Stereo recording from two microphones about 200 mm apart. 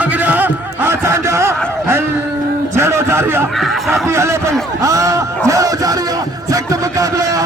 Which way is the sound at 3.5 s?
Centre (ahead or behind).